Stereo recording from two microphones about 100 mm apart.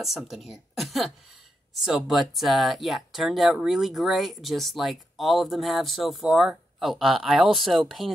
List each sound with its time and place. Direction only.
0.0 s speech: centre (ahead or behind)